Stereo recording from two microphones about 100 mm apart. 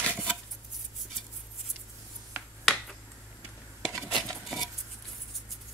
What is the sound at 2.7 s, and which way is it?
Finger snapping, centre (ahead or behind).